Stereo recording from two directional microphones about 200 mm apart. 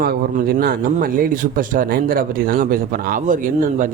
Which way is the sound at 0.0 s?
50° right (ahead or behind).